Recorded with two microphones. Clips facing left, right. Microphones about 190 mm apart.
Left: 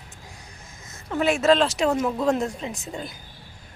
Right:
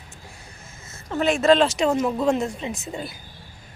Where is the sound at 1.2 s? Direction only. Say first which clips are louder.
Right 2 dB; 10° left (ahead or behind).